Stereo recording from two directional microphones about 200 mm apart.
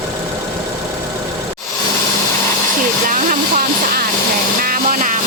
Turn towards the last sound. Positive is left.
turn(degrees=-40)  # may be behind; listen again after turning